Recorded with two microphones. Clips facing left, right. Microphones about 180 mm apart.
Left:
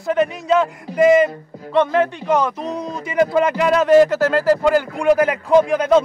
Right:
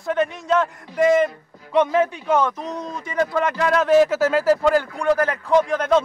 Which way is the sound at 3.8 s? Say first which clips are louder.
Left 3 dB; centre (ahead or behind).